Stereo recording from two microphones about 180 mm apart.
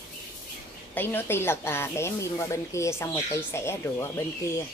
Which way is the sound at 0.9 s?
10° left (ahead or behind).